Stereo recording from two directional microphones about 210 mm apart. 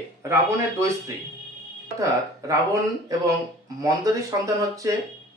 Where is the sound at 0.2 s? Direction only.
15° right (ahead or behind).